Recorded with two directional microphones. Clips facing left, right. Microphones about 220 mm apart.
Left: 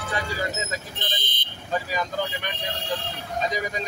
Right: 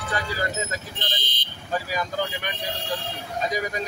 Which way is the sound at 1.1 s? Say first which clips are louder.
Even; 55° left (ahead or behind).